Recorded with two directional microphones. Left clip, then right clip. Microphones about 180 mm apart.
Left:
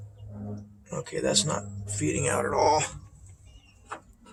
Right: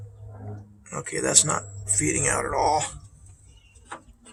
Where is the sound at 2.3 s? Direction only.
20° left (ahead or behind).